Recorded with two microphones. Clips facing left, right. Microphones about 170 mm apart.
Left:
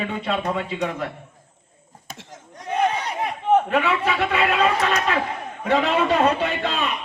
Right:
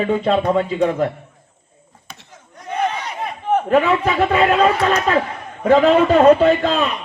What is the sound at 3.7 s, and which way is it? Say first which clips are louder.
A man's voice: right 6 dB; 40° right (ahead or behind).